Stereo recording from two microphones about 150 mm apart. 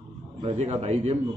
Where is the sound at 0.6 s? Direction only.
45° right (ahead or behind).